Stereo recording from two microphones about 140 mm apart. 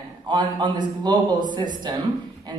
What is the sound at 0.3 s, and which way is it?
A woman's voice, 30° right (ahead or behind).